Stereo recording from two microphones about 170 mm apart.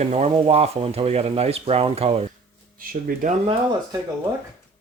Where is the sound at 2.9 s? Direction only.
60° right (ahead or behind).